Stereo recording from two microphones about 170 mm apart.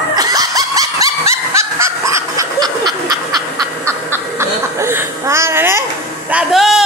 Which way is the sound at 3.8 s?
15° right (ahead or behind).